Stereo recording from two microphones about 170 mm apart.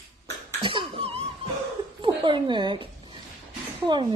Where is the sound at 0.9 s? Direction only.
35° right (ahead or behind).